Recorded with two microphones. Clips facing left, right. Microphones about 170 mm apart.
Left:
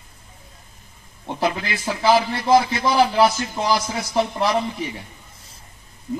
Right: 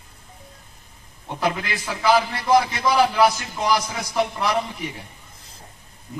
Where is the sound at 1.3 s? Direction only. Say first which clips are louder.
Left 1 dB; 30° left (ahead or behind).